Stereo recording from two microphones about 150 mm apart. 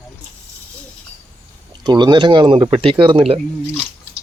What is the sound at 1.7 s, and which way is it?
Speech, 30° right (ahead or behind).